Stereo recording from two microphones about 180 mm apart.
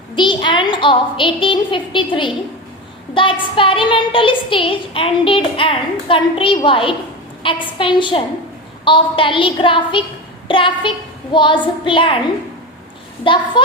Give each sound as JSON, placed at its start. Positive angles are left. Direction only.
{"t": 0.2, "sound": "a woman's voice", "side_deg": 25}
{"t": 13.2, "sound": "a woman's voice", "side_deg": 25}